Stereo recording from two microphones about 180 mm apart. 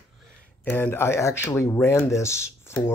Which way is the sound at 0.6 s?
10° left (ahead or behind).